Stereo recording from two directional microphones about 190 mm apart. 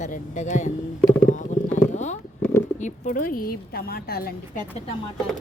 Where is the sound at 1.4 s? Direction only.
40° left (ahead or behind).